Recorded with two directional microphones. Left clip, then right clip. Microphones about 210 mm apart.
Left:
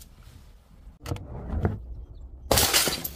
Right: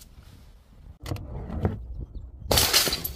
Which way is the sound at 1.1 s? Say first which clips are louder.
Even; 15° right (ahead or behind).